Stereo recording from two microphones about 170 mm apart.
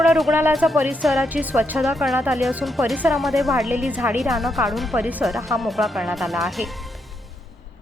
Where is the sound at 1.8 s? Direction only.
Centre (ahead or behind).